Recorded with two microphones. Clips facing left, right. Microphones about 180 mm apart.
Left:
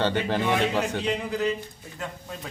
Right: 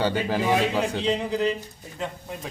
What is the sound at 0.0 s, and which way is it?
Speech, 10° right (ahead or behind).